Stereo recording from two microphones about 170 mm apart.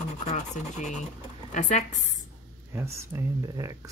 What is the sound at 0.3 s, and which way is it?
A woman's voice, 45° left (ahead or behind).